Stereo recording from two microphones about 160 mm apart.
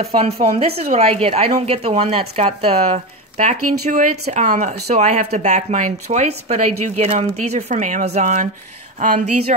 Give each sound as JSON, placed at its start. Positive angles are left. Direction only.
{"t": 0.0, "sound": "a woman's voice", "side_deg": -40}